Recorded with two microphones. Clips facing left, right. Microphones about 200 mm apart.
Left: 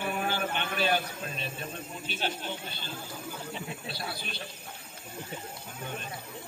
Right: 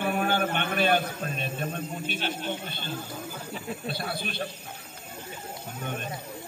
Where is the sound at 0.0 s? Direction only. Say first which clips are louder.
Right 5 dB; 55° right (ahead or behind).